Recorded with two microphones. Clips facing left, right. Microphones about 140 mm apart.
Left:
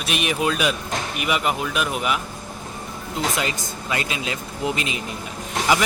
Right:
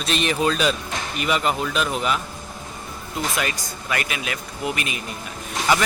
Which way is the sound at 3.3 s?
25° left (ahead or behind).